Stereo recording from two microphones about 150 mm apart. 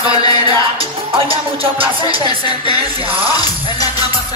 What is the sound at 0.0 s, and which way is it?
Music, 25° left (ahead or behind).